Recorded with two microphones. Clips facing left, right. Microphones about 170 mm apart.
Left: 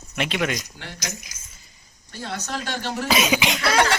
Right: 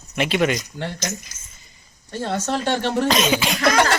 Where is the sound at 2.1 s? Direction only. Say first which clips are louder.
Right 7 dB; 50° right (ahead or behind).